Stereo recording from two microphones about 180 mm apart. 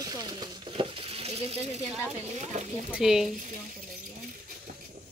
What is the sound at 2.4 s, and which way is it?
Speech, 40° right (ahead or behind).